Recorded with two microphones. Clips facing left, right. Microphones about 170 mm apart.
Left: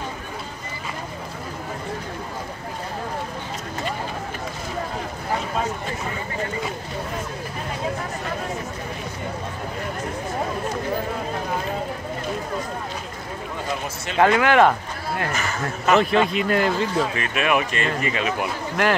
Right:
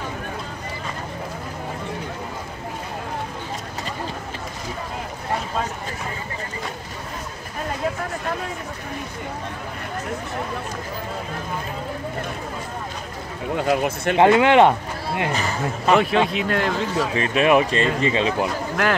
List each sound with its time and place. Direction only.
13.7 s speech: 55° right (ahead or behind)
14.1 s speech: 25° right (ahead or behind)
15.3 s speech: 30° right (ahead or behind)
15.9 s speech: 5° right (ahead or behind)
17.1 s speech: 30° right (ahead or behind)